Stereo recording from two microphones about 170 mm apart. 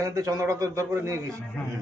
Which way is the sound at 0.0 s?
20° right (ahead or behind).